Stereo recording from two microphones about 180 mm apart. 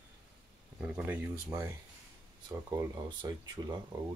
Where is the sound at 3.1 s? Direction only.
25° right (ahead or behind).